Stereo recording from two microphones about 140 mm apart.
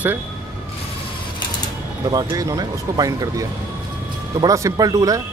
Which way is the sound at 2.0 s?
25° right (ahead or behind).